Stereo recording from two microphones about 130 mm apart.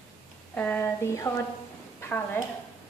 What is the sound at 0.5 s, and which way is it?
A woman's voice, 15° left (ahead or behind).